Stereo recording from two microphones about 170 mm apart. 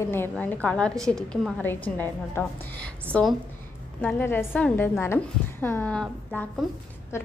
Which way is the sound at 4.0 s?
10° left (ahead or behind).